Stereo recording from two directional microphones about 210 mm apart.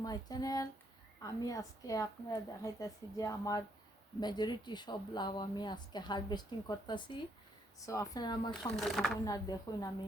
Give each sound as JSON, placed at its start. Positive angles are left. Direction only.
{"t": 0.0, "sound": "speech", "side_deg": 20}
{"t": 8.7, "sound": "speech", "side_deg": 0}
{"t": 9.2, "sound": "speech", "side_deg": 15}